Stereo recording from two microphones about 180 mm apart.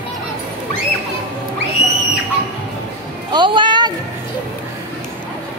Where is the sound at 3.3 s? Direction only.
25° right (ahead or behind).